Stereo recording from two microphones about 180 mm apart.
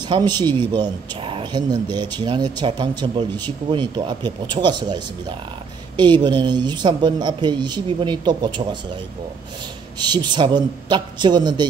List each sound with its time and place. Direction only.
0.1 s a man's voice: 25° right (ahead or behind)
9.9 s a man's voice: 25° right (ahead or behind)